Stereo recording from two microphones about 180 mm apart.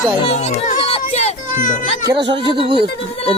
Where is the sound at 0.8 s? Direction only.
35° left (ahead or behind).